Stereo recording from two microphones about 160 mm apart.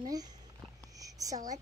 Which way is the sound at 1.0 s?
20° right (ahead or behind).